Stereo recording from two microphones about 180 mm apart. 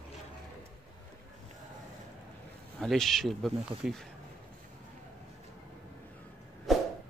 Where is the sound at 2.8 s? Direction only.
Centre (ahead or behind).